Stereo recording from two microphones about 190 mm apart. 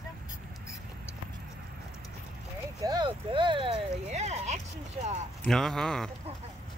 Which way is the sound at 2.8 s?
25° right (ahead or behind).